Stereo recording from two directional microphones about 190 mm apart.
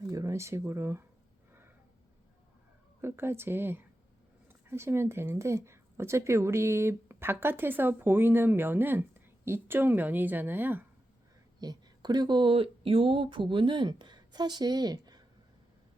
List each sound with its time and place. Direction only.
0.0 s speech: 15° right (ahead or behind)
3.0 s speech: 10° right (ahead or behind)
11.6 s speech: 20° right (ahead or behind)